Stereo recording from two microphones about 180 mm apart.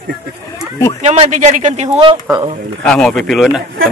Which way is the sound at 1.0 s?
35° right (ahead or behind).